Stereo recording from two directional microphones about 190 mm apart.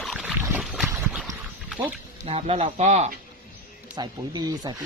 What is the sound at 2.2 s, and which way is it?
Speech, 30° right (ahead or behind).